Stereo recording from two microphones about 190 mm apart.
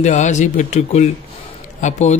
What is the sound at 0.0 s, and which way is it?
Speech, 40° left (ahead or behind).